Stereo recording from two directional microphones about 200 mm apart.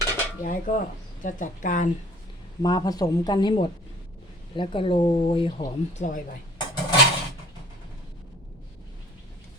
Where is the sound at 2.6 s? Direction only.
20° left (ahead or behind).